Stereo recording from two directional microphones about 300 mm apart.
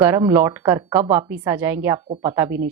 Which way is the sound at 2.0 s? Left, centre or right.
Centre.